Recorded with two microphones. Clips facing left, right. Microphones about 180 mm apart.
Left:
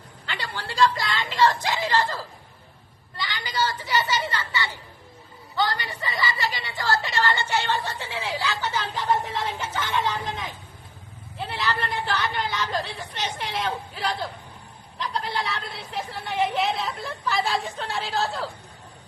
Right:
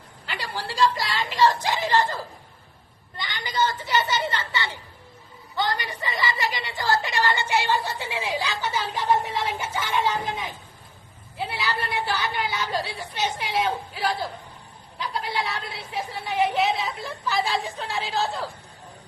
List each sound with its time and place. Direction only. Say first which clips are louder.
0.3 s a sound: right 1 dB; 10° right (ahead or behind)
3.2 s a woman's voice: right 1 dB; 20° right (ahead or behind)
11.3 s a woman's voice: left 1 dB; 5° right (ahead or behind)